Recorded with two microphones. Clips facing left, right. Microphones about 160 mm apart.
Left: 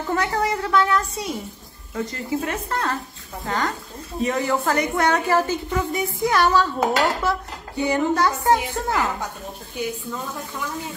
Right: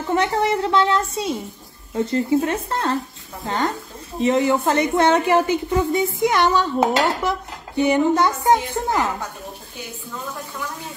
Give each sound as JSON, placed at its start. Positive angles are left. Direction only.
{"t": 0.1, "sound": "speech", "side_deg": -25}